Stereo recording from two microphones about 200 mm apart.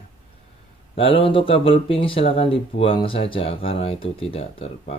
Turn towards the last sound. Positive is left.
turn(degrees=30)  # may be behind; listen again after turning